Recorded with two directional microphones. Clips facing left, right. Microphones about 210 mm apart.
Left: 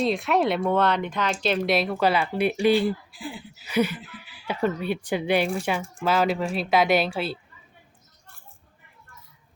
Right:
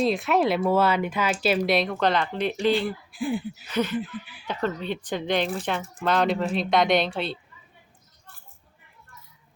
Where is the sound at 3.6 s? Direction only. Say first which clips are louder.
Left 3 dB; 10° left (ahead or behind).